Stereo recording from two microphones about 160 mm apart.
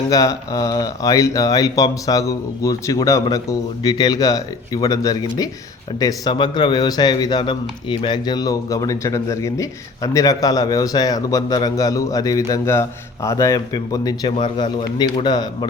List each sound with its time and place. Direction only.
0.1 s a man's voice: 20° left (ahead or behind)
14.3 s a man's voice: 45° left (ahead or behind)
14.9 s a man's voice: 25° left (ahead or behind)